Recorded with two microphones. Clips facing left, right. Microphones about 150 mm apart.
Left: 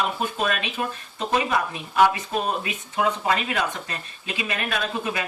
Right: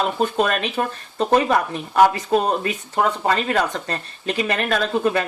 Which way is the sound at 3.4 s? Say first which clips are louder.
Right 5 dB; 50° right (ahead or behind).